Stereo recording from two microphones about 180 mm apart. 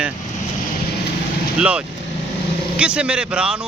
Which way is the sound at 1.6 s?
5° right (ahead or behind).